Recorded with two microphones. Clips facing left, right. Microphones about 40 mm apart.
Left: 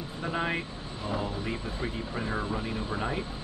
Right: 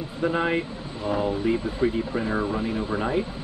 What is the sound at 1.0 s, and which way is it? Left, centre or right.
Speech, right.